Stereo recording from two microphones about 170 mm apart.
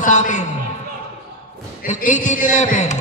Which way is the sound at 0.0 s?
45° left (ahead or behind).